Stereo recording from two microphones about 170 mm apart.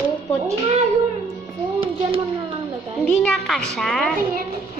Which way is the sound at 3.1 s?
Centre (ahead or behind).